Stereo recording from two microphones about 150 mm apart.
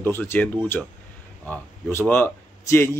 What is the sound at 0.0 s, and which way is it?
Speech, 15° left (ahead or behind).